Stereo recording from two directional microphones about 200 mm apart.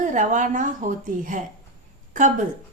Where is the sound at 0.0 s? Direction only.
40° right (ahead or behind).